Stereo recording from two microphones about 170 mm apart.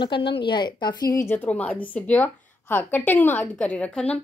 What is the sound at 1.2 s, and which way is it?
A woman's voice, 10° left (ahead or behind).